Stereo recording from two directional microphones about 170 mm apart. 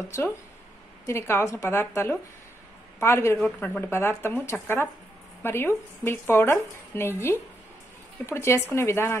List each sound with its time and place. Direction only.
1.0 s speech: 15° left (ahead or behind)